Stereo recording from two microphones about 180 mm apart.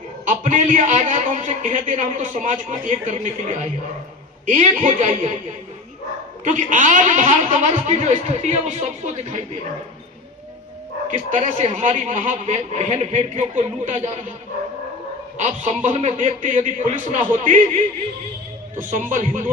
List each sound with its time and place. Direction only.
0.3 s a man's voice: 45° right (ahead or behind)
11.1 s a man's voice: 45° right (ahead or behind)
15.4 s a man's voice: 40° right (ahead or behind)
18.8 s a man's voice: 45° right (ahead or behind)